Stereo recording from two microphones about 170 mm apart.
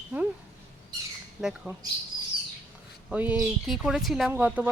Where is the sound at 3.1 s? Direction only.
10° right (ahead or behind).